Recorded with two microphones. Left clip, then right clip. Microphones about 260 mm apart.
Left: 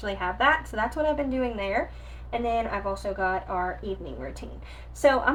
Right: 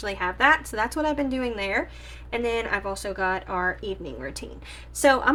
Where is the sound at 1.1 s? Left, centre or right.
Right.